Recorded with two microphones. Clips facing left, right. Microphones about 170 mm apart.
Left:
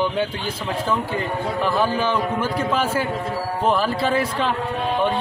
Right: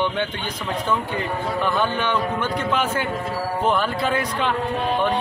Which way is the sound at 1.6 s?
5° left (ahead or behind).